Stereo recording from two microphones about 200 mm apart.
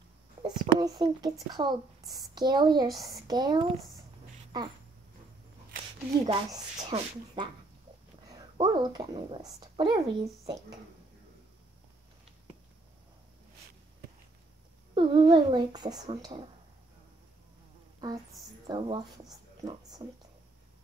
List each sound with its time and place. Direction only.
0.4 s speech: 20° right (ahead or behind)
2.9 s a woman's voice: centre (ahead or behind)
3.3 s speech: 20° right (ahead or behind)
6.2 s speech: 25° right (ahead or behind)
15.0 s speech: 25° right (ahead or behind)
18.7 s speech: 20° right (ahead or behind)